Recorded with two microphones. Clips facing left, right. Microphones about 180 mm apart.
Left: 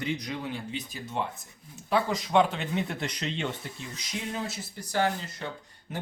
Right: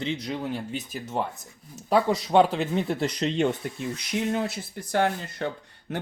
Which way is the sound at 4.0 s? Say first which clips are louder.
Right 7 dB; 60° right (ahead or behind).